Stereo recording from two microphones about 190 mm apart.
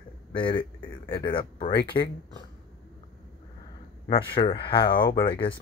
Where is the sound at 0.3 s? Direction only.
25° left (ahead or behind).